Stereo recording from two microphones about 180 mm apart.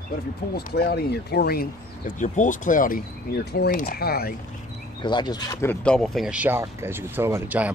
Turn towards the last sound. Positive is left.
turn(degrees=-10)  # may be behind; listen again after turning